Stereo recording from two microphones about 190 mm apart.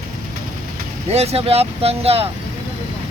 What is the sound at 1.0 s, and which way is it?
Speech, 35° right (ahead or behind).